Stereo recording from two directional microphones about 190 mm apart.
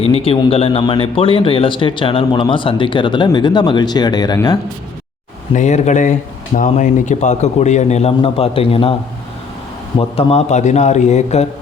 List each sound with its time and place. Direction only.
0.0 s speech: 30° left (ahead or behind)
5.5 s a man's voice: 40° left (ahead or behind)
10.0 s a man's voice: 30° left (ahead or behind)